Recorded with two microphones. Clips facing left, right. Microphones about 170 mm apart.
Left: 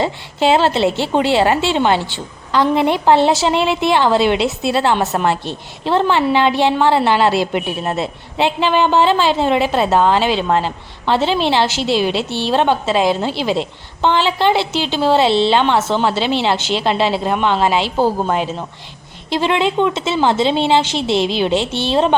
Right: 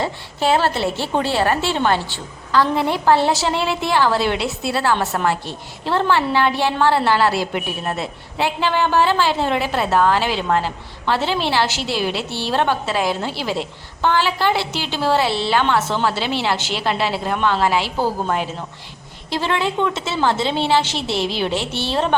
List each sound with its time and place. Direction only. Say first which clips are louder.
0.0 s a woman's voice: left 4 dB; 20° left (ahead or behind)